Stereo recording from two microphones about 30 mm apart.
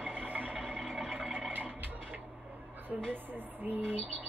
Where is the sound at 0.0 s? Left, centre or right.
Right.